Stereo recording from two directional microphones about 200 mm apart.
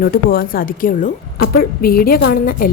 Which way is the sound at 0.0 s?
45° left (ahead or behind).